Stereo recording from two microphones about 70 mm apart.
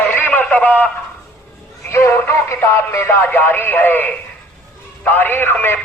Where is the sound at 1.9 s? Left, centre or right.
Left.